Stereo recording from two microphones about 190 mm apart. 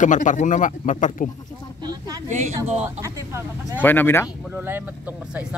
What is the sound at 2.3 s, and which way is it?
Speech, 40° right (ahead or behind).